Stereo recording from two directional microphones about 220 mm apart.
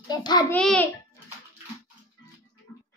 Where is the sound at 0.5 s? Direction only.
5° left (ahead or behind).